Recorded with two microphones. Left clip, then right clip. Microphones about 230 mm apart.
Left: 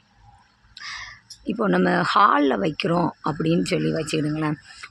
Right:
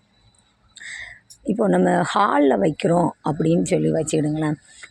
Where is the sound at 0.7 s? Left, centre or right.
Centre.